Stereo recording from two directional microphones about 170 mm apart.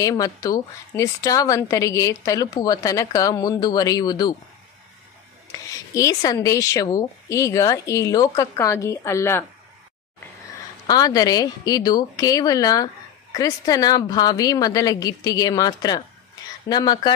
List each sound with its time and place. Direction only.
0.0 s a woman's voice: 20° left (ahead or behind)
5.5 s a woman's voice: 20° left (ahead or behind)
10.9 s a woman's voice: 25° left (ahead or behind)